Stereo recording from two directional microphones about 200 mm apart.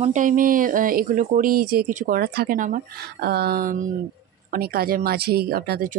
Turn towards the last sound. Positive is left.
turn(degrees=-50)  # may be behind; listen again after turning